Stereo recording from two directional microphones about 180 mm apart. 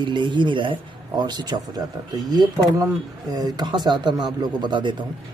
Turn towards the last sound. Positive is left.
turn(degrees=-25)  # may be behind; listen again after turning